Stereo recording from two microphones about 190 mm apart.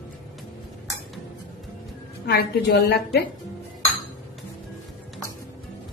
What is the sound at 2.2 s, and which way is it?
A woman's voice, 55° left (ahead or behind).